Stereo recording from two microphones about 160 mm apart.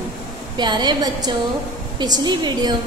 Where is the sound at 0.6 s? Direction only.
30° right (ahead or behind).